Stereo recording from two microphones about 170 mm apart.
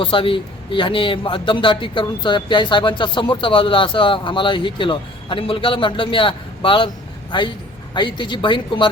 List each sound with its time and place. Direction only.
0.0 s a man's voice: 30° left (ahead or behind)